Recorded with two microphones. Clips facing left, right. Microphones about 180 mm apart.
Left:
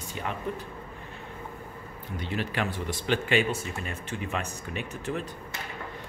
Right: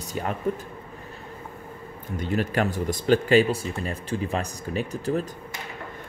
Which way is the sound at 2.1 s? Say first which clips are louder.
Right 6 dB; 45° right (ahead or behind).